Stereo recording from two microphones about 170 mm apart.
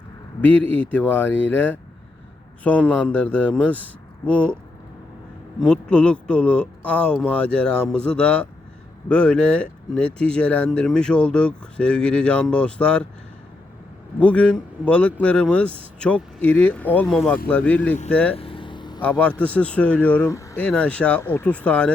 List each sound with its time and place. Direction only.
0.4 s speech: 10° left (ahead or behind)
2.9 s speech: 10° left (ahead or behind)
5.5 s speech: 5° left (ahead or behind)
14.2 s speech: 5° left (ahead or behind)
18.3 s vehicle: 30° left (ahead or behind)
19.0 s speech: 10° left (ahead or behind)
20.7 s speech: 5° left (ahead or behind)